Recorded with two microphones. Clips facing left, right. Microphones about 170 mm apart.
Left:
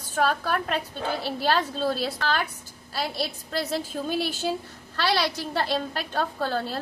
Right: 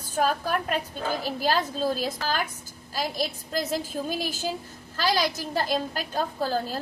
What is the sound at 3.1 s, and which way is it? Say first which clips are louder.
A woman's voice: even; 40° right (ahead or behind).